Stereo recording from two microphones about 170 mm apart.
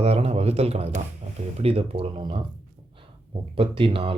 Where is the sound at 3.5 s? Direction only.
30° right (ahead or behind).